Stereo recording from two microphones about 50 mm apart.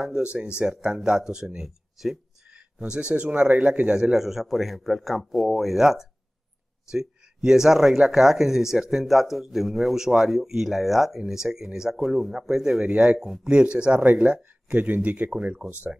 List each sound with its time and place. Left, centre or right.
0.2 s a man's voice: centre
2.5 s speech: centre
4.1 s a man's voice: centre; by 15.6 s right